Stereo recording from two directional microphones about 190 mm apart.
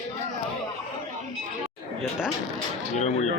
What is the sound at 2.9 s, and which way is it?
Speech, 35° left (ahead or behind).